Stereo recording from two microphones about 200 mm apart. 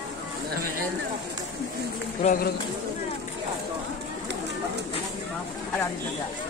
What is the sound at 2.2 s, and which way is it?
Speech, 45° left (ahead or behind).